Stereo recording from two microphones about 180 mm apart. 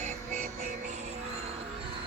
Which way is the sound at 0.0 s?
40° right (ahead or behind).